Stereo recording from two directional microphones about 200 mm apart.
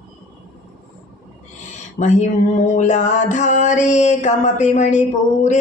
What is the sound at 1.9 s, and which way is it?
Music, 35° left (ahead or behind).